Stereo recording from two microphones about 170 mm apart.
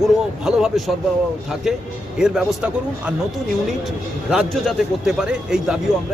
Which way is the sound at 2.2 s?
5° right (ahead or behind).